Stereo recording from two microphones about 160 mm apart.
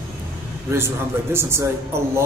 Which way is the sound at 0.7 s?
15° right (ahead or behind).